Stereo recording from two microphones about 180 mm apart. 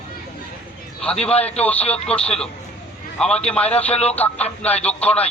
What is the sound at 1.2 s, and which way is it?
Speech, 35° left (ahead or behind).